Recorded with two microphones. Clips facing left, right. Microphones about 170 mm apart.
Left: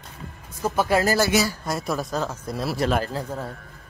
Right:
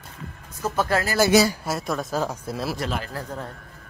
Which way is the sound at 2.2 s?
10° right (ahead or behind).